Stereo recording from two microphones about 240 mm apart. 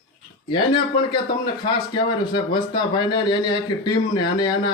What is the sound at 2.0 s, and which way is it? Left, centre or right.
Speech, centre.